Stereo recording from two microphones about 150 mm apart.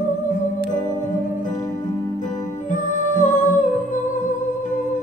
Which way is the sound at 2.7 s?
60° left (ahead or behind).